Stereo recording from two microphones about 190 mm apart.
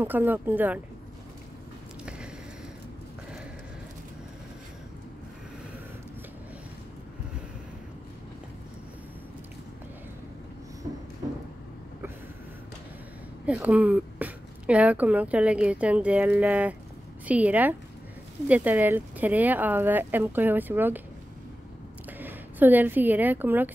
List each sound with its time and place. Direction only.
0.0 s speech: 10° right (ahead or behind)
13.5 s speech: 5° right (ahead or behind)
22.2 s a woman's voice: 10° right (ahead or behind)